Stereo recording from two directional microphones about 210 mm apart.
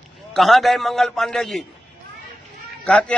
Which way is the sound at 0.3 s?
Centre (ahead or behind).